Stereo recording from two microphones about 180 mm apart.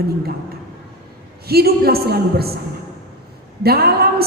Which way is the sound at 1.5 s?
60° right (ahead or behind).